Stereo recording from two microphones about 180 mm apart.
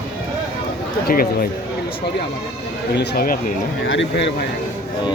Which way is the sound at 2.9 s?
60° left (ahead or behind).